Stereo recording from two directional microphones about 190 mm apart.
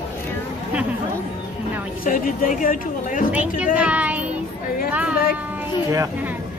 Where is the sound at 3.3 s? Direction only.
5° right (ahead or behind).